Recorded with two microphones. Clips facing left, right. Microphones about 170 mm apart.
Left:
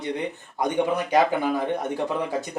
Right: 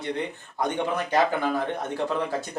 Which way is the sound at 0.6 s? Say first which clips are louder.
Left 3 dB; 15° left (ahead or behind).